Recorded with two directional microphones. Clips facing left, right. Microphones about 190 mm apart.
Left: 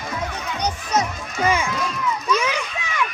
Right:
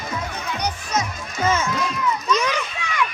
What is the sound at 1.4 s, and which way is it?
Run, 15° left (ahead or behind).